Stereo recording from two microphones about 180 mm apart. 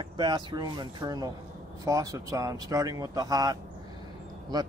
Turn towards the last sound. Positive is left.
turn(degrees=-20)  # may be behind; listen again after turning